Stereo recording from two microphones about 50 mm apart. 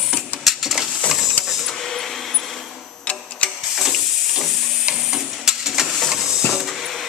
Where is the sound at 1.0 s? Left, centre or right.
Centre.